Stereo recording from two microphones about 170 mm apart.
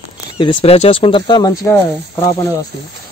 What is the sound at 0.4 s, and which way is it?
Speech, 30° left (ahead or behind).